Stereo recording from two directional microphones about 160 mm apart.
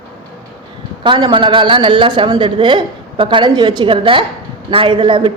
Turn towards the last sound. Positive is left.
turn(degrees=-30)  # may be behind; listen again after turning